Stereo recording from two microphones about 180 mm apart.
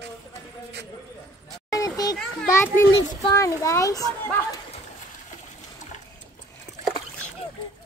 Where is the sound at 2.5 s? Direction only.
15° left (ahead or behind).